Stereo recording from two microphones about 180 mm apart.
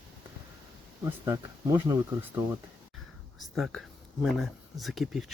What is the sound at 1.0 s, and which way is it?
Speech, 20° right (ahead or behind).